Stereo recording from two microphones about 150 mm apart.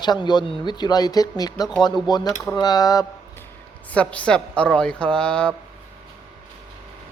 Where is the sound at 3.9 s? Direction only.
10° left (ahead or behind).